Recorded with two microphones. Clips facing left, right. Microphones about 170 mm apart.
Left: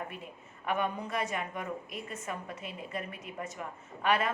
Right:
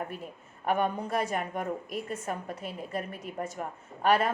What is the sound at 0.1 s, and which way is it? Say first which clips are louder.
A woman's voice: right 4 dB; 40° right (ahead or behind).